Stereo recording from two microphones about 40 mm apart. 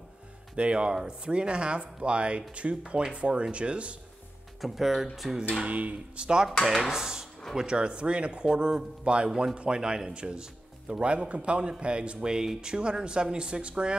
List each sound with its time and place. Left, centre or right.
0.6 s speech: right
4.6 s speech: centre
5.6 s speech: right
6.2 s speech: centre
6.6 s speech: centre; by 13.9 s right